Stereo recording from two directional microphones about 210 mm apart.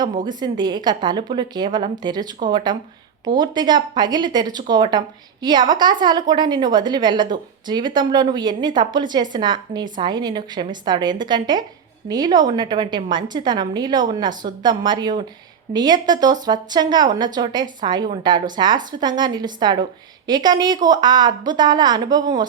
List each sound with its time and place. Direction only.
0.3 s a woman's voice: 20° right (ahead or behind)